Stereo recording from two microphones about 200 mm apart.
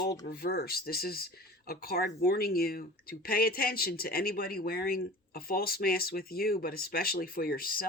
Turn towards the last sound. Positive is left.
turn(degrees=45)  # may be behind; listen again after turning